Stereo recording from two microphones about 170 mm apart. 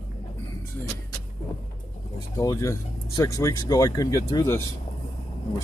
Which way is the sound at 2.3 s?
20° left (ahead or behind).